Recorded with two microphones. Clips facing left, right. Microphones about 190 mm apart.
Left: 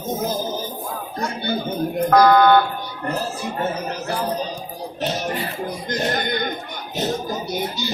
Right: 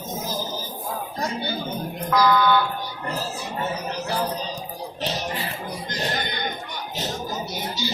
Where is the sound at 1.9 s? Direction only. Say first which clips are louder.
Left 6 dB; 55° left (ahead or behind).